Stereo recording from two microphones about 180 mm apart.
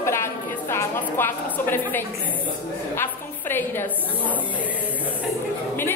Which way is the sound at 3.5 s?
10° left (ahead or behind).